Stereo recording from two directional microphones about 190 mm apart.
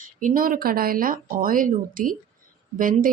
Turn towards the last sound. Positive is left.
turn(degrees=-45)  # may be behind; listen again after turning